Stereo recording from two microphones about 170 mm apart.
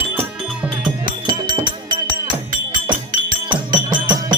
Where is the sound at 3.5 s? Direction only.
25° right (ahead or behind).